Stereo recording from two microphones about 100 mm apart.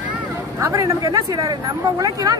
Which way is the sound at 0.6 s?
30° right (ahead or behind).